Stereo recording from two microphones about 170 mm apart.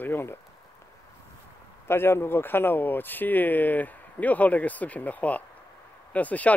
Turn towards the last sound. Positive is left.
turn(degrees=10)  # may be behind; listen again after turning